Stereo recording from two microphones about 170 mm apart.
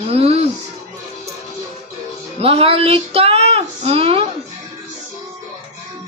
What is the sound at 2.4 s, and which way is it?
Speech, 35° right (ahead or behind).